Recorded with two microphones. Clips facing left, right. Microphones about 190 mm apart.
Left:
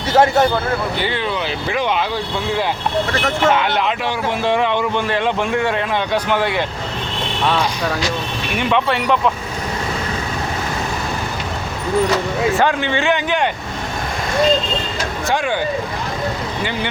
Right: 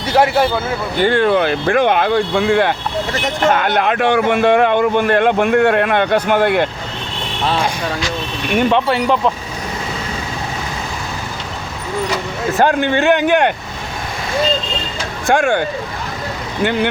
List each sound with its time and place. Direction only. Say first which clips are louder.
0.1 s speech: even; 10° right (ahead or behind)
0.9 s speech: right 8 dB; 50° right (ahead or behind)
3.5 s speech: right 2 dB; 50° right (ahead or behind)
8.5 s speech: right 4 dB; 35° right (ahead or behind)
12.5 s speech: right 3 dB; 50° right (ahead or behind)
15.3 s speech: right 6 dB; 50° right (ahead or behind)